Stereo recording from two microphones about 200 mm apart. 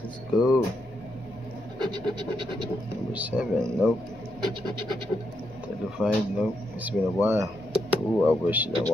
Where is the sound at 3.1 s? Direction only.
5° right (ahead or behind).